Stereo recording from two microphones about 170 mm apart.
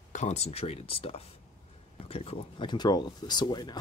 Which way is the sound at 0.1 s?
40° left (ahead or behind).